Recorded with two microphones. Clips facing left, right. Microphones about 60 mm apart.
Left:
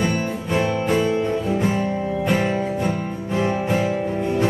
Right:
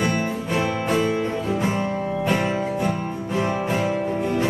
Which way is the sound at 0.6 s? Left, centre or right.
Centre.